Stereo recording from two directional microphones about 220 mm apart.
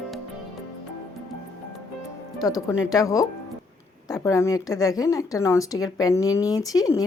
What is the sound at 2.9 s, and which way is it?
Speech, 15° left (ahead or behind).